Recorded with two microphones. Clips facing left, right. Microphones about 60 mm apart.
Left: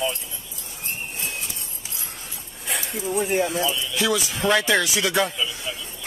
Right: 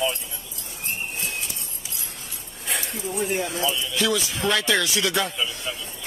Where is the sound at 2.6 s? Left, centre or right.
Centre.